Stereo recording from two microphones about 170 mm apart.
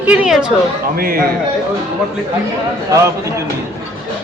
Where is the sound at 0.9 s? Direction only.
60° right (ahead or behind).